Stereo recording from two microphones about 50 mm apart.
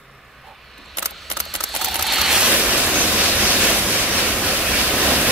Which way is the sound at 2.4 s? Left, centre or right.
Right.